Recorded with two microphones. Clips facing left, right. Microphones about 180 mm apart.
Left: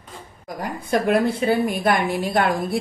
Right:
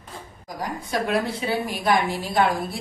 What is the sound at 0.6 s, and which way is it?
A woman's voice, 55° left (ahead or behind).